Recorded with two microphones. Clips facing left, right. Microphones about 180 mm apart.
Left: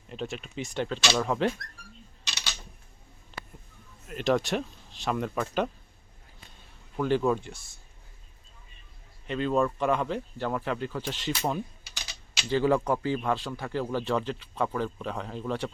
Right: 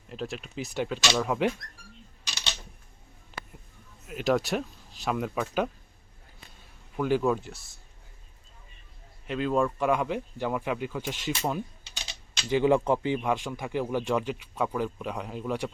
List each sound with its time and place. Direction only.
0.1 s speech: centre (ahead or behind)
3.3 s a sound: 10° right (ahead or behind)
4.0 s speech: 5° right (ahead or behind)
6.9 s speech: 5° right (ahead or behind)
9.2 s speech: 5° right (ahead or behind)
11.8 s typing: 25° right (ahead or behind)
12.5 s speech: 15° right (ahead or behind)